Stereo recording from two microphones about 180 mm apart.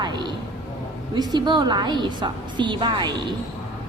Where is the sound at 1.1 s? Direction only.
25° right (ahead or behind).